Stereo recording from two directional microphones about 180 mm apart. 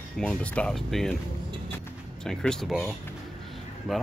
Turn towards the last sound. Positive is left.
turn(degrees=0)  # may be behind; listen again after turning